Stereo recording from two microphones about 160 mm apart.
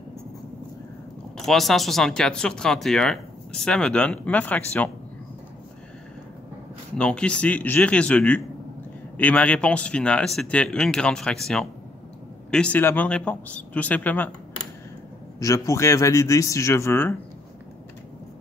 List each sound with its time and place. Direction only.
1.4 s speech: centre (ahead or behind)
7.0 s speech: 5° left (ahead or behind)
15.3 s a man's voice: 20° left (ahead or behind)